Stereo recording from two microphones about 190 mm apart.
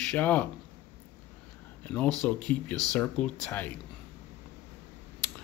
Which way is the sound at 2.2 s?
5° left (ahead or behind).